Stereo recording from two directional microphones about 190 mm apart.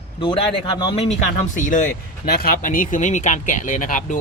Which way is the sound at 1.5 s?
45° left (ahead or behind).